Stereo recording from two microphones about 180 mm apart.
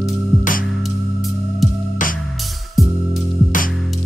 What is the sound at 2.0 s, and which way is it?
Music, 45° left (ahead or behind).